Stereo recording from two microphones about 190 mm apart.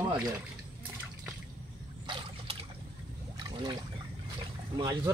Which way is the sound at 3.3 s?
20° right (ahead or behind).